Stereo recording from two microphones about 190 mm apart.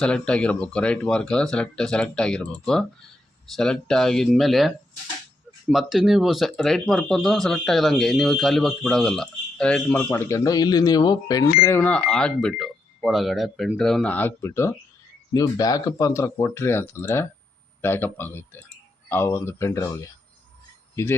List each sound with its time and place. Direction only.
0.0 s speech: 5° left (ahead or behind); by 11.4 s 20° left (ahead or behind)
11.6 s speech: 10° left (ahead or behind)
20.9 s speech: 10° left (ahead or behind)